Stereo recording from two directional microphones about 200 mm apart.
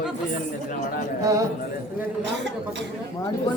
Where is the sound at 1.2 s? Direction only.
15° right (ahead or behind).